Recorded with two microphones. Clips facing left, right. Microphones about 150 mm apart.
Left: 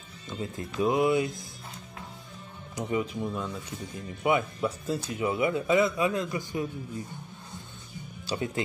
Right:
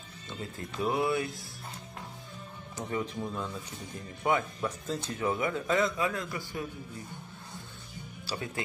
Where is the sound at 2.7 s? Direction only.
10° left (ahead or behind).